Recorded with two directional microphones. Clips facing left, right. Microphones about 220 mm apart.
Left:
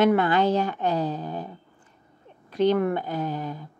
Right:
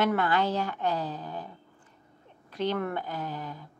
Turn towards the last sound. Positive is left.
turn(degrees=20)  # may be behind; listen again after turning